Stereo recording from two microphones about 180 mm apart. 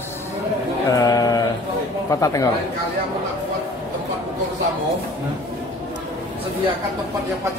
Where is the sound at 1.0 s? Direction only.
20° left (ahead or behind).